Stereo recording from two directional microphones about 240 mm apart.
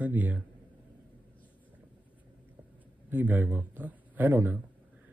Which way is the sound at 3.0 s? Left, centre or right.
Centre.